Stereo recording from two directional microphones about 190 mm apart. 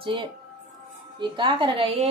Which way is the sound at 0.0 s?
25° right (ahead or behind).